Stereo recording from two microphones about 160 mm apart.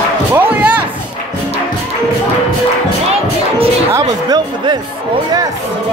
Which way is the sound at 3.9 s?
25° right (ahead or behind).